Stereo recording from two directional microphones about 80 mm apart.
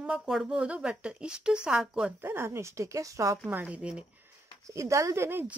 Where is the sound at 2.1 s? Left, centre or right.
Right.